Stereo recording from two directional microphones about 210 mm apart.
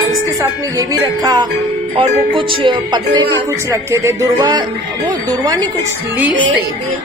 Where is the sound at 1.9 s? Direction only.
25° right (ahead or behind).